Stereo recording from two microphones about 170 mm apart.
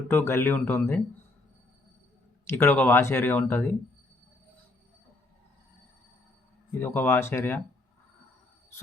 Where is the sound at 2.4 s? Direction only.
15° left (ahead or behind).